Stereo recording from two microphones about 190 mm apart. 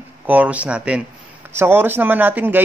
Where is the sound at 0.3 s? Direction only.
5° right (ahead or behind).